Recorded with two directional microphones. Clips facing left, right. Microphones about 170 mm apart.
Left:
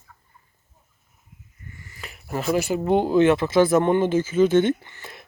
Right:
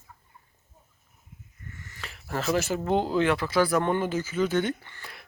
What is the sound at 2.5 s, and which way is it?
Speech, 10° left (ahead or behind).